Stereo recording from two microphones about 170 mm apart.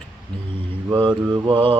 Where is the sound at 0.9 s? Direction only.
30° right (ahead or behind).